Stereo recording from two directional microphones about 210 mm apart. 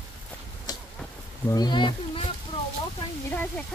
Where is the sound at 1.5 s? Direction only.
20° left (ahead or behind).